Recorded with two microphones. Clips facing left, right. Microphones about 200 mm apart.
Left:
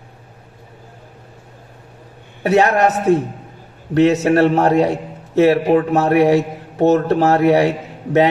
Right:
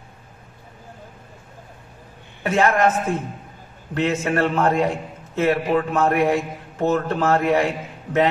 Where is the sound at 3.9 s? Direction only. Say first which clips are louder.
Left 9 dB; 75° left (ahead or behind).